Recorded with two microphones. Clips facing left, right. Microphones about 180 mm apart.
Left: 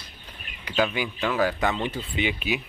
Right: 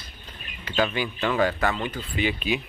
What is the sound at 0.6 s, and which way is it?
Speech, 10° left (ahead or behind).